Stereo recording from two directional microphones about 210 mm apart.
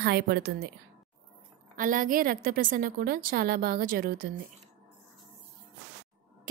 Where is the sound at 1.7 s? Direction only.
40° right (ahead or behind).